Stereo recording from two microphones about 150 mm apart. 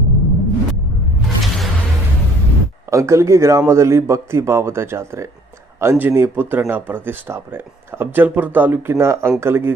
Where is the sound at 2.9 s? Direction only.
20° right (ahead or behind).